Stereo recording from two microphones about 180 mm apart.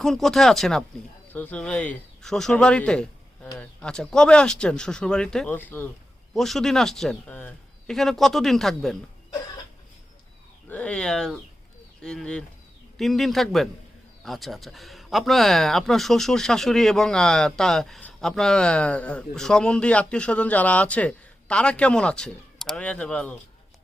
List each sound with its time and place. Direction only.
0.0 s speech: centre (ahead or behind)
10.7 s speech: 5° left (ahead or behind)